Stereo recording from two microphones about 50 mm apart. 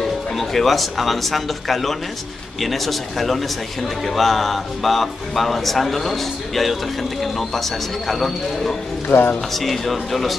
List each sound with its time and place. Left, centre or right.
0.4 s speech: centre
9.1 s speech: left
9.5 s speech: centre